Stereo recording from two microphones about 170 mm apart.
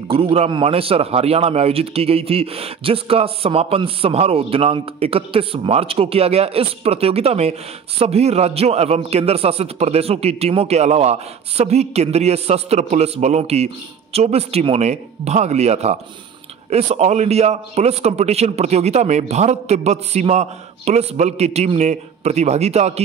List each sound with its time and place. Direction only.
0.1 s a man's voice: 35° right (ahead or behind)